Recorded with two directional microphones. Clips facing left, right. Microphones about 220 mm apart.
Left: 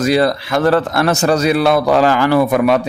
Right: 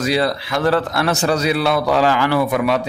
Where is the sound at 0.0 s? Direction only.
50° left (ahead or behind).